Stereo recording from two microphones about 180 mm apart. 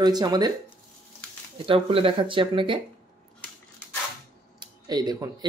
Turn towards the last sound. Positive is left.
turn(degrees=-20)  # may be behind; listen again after turning